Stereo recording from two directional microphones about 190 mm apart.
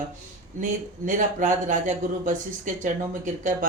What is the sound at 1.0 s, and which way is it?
Speech, 40° right (ahead or behind).